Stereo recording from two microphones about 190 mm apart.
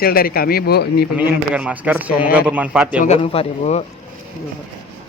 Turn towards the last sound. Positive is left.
turn(degrees=35)  # may be behind; listen again after turning